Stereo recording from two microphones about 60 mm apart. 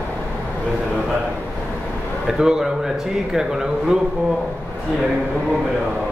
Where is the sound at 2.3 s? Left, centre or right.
Centre.